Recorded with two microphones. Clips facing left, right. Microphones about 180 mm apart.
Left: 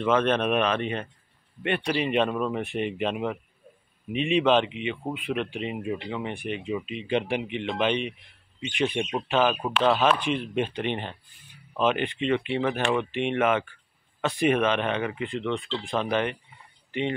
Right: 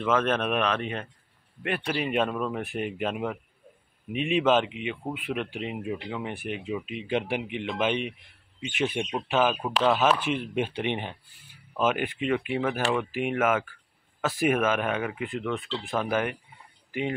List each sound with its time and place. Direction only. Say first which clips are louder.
0.0 s speech: left 2 dB; centre (ahead or behind)